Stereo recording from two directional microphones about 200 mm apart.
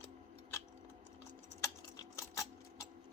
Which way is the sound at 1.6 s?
15° left (ahead or behind).